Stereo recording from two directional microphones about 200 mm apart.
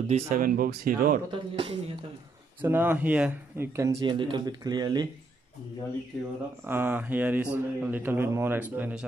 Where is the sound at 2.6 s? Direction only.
10° right (ahead or behind).